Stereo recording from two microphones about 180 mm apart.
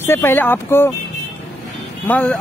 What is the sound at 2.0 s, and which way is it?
Speech, 5° left (ahead or behind).